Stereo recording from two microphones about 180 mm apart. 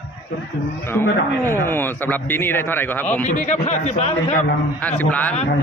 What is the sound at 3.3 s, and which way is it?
Speech, 45° left (ahead or behind).